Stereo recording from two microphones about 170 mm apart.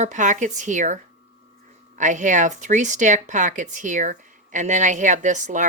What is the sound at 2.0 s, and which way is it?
Speech, 45° right (ahead or behind).